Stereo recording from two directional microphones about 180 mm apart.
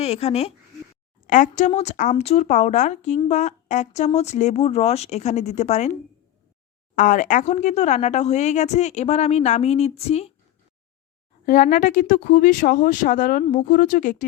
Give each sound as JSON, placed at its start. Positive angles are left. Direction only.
{"t": 0.0, "sound": "speech", "side_deg": 35}
{"t": 11.4, "sound": "speech", "side_deg": 45}
{"t": 13.4, "sound": "speech", "side_deg": 35}
{"t": 13.7, "sound": "speech", "side_deg": 45}